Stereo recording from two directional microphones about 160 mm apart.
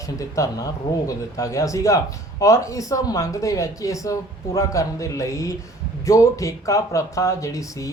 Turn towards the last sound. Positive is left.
turn(degrees=20)  # may be behind; listen again after turning